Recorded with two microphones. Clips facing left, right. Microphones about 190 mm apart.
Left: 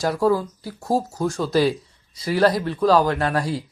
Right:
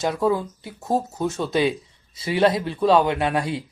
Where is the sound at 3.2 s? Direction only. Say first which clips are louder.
Even; 25° right (ahead or behind).